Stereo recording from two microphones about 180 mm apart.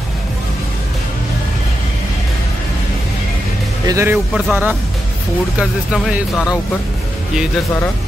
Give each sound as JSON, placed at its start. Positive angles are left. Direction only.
{"t": 3.8, "sound": "speech", "side_deg": -15}